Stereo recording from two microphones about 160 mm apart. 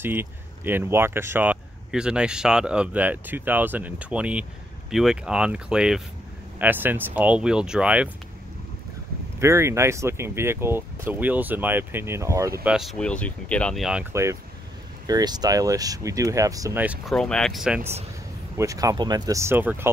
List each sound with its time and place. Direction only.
0.0 s speech: 15° right (ahead or behind)
9.4 s speech: 15° right (ahead or behind)
12.6 s speech: centre (ahead or behind)
15.0 s speech: 25° right (ahead or behind)
16.8 s speech: 10° right (ahead or behind)
17.1 s speech: 5° left (ahead or behind)
18.6 s speech: 20° right (ahead or behind)